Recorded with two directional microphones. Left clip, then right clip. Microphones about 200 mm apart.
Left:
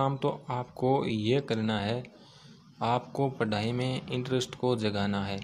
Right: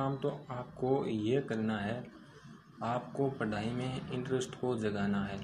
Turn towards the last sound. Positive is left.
turn(degrees=40)  # may be behind; listen again after turning